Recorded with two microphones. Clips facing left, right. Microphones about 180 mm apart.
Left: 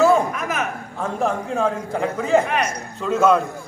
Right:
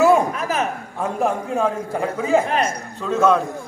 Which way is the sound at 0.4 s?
30° right (ahead or behind).